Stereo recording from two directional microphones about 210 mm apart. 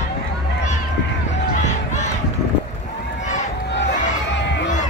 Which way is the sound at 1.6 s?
35° left (ahead or behind).